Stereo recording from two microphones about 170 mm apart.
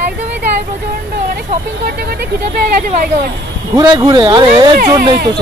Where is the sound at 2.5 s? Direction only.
60° right (ahead or behind).